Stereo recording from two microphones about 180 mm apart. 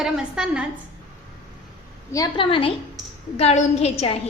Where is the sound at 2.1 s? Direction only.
30° left (ahead or behind).